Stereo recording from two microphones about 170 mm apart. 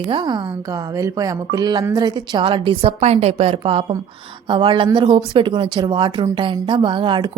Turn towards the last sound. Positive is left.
turn(degrees=-30)  # may be behind; listen again after turning